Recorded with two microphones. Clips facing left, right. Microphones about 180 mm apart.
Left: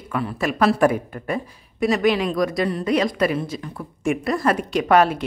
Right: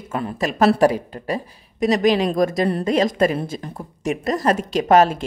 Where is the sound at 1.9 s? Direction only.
35° right (ahead or behind).